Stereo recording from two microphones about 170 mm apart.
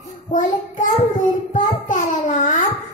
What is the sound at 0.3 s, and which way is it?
Child singing, 50° left (ahead or behind).